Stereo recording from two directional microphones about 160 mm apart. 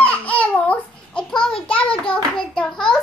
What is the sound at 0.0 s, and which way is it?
Babbling, 10° left (ahead or behind).